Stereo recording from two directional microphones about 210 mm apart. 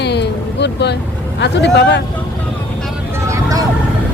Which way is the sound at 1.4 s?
55° left (ahead or behind).